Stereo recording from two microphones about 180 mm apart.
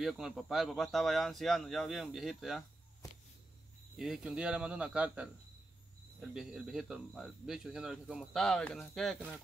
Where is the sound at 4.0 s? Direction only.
Centre (ahead or behind).